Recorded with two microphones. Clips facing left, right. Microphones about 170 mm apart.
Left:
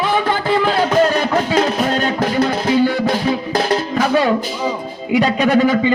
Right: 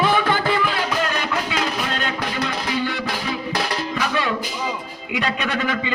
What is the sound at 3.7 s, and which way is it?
Speech, 45° left (ahead or behind).